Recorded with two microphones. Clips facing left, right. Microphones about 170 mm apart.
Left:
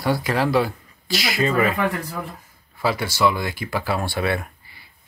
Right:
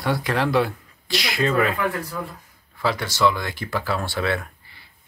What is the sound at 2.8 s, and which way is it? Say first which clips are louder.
Speech: left 1 dB; 10° left (ahead or behind).